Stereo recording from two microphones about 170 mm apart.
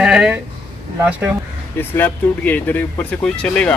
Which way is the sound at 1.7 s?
10° left (ahead or behind).